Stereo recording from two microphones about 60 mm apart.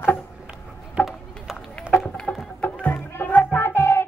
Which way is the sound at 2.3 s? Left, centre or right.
Left.